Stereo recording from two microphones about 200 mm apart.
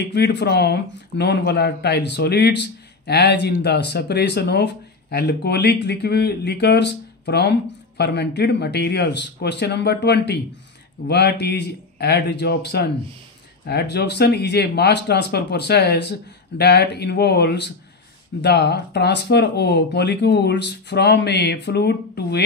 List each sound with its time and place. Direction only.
0.1 s speech: 55° left (ahead or behind)